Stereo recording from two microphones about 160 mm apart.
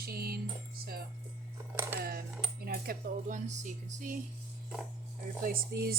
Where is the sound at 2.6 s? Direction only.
60° right (ahead or behind).